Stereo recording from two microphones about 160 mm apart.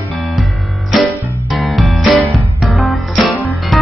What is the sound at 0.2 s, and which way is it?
Music, centre (ahead or behind).